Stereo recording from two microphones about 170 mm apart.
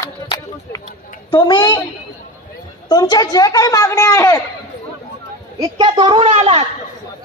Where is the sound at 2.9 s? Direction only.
25° left (ahead or behind).